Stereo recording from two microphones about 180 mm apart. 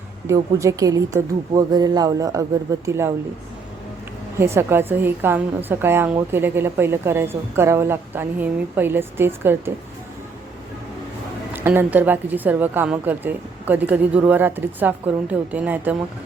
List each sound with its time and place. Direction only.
0.3 s a woman's voice: 15° right (ahead or behind)
4.4 s a woman's voice: 15° right (ahead or behind)
11.5 s a woman's voice: 10° right (ahead or behind)